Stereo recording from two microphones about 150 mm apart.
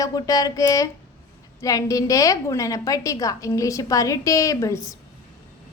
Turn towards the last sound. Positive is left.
turn(degrees=20)  # may be behind; listen again after turning